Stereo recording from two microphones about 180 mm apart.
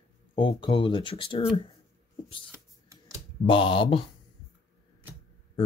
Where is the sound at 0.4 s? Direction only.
25° left (ahead or behind).